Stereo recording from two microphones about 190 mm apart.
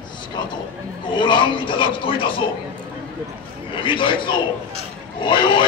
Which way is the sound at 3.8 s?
25° left (ahead or behind).